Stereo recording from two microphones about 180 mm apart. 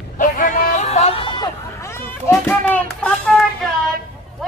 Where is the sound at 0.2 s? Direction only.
50° left (ahead or behind); by 3.4 s 5° left (ahead or behind).